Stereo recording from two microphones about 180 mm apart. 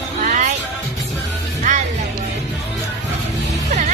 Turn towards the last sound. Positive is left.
turn(degrees=-40)  # may be behind; listen again after turning